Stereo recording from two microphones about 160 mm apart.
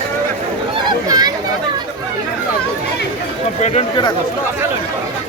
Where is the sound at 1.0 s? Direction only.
25° right (ahead or behind).